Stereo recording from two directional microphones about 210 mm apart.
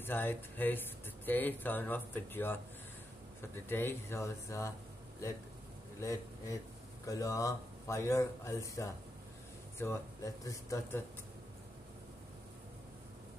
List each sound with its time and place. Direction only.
0.0 s speech: 10° left (ahead or behind)
5.9 s a man's voice: 15° left (ahead or behind)